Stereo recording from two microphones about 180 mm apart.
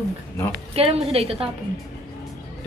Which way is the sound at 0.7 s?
35° right (ahead or behind).